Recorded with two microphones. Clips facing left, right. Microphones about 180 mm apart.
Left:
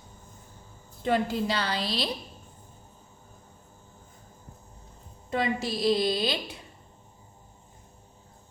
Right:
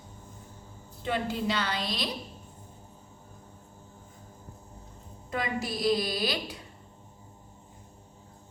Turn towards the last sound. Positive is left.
turn(degrees=25)  # may be behind; listen again after turning